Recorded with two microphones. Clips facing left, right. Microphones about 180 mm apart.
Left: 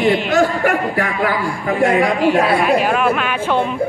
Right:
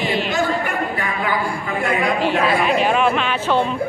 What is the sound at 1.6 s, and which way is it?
Speech, 45° left (ahead or behind).